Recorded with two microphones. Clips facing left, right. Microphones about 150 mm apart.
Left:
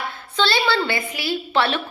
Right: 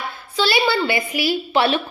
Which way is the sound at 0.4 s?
10° right (ahead or behind).